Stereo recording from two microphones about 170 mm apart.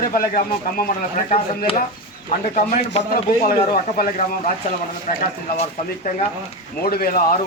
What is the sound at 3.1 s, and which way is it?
Speech, 60° left (ahead or behind).